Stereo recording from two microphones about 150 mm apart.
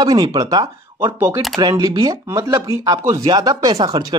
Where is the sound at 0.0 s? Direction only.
25° right (ahead or behind).